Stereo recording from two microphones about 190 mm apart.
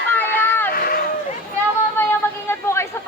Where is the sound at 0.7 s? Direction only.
50° left (ahead or behind).